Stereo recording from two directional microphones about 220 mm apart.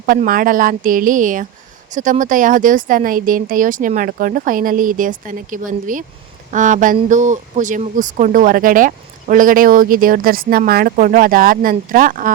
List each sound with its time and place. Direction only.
0.0 s speech: 40° right (ahead or behind)